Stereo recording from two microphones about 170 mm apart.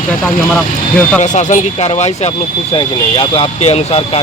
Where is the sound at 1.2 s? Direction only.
45° left (ahead or behind).